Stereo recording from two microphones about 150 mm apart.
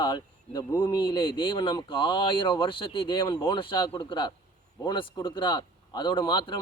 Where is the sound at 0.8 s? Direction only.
35° left (ahead or behind).